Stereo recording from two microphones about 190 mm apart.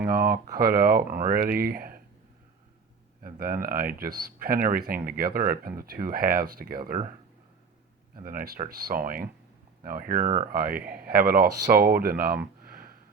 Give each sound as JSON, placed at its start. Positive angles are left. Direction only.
{"t": 0.1, "sound": "speech", "side_deg": -50}
{"t": 3.2, "sound": "speech", "side_deg": -50}
{"t": 8.1, "sound": "speech", "side_deg": -50}